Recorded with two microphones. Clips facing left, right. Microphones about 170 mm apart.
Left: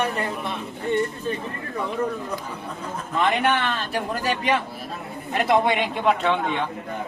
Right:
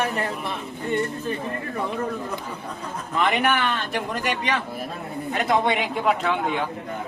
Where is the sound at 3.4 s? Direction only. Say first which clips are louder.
Even; 25° left (ahead or behind).